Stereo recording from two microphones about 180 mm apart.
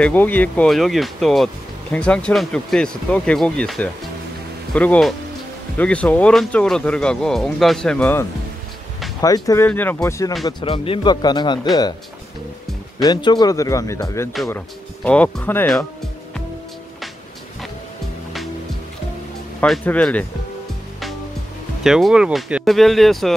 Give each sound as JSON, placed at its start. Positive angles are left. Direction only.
{"t": 0.0, "sound": "a man's voice", "side_deg": 10}
{"t": 10.4, "sound": "a man's voice", "side_deg": 30}
{"t": 13.0, "sound": "a man's voice", "side_deg": 25}
{"t": 15.0, "sound": "speech", "side_deg": 5}
{"t": 19.6, "sound": "speech", "side_deg": 5}
{"t": 21.8, "sound": "speech", "side_deg": 0}